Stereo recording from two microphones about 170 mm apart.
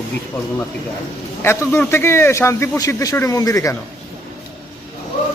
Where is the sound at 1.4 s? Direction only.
15° left (ahead or behind).